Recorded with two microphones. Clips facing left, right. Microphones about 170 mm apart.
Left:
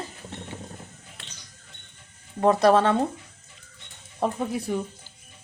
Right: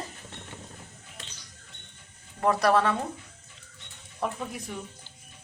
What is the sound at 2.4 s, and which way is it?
Speech, 25° left (ahead or behind).